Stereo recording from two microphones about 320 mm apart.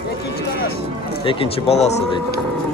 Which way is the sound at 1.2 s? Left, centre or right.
Centre.